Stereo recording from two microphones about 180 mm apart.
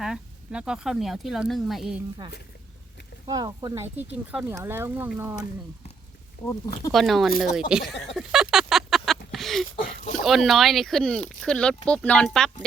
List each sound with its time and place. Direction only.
0.0 s speech: 5° right (ahead or behind)
3.2 s speech: 20° right (ahead or behind)
3.9 s speech: 10° right (ahead or behind)
6.4 s speech: 20° left (ahead or behind)
6.9 s speech: centre (ahead or behind)
7.7 s a sound: centre (ahead or behind)
9.8 s a sound: 40° left (ahead or behind)
10.2 s speech: centre (ahead or behind)